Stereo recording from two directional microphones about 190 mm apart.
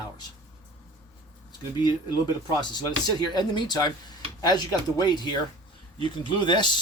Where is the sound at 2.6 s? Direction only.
20° left (ahead or behind).